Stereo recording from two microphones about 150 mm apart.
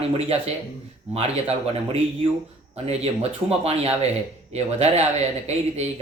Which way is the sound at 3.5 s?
45° right (ahead or behind).